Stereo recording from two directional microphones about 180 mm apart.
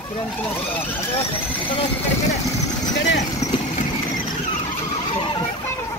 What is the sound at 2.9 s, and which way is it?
Speech, 85° left.